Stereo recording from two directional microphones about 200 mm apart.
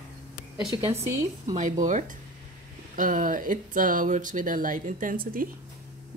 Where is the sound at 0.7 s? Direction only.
30° right (ahead or behind).